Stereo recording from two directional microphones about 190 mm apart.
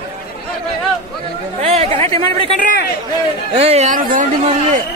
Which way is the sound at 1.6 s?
30° right (ahead or behind).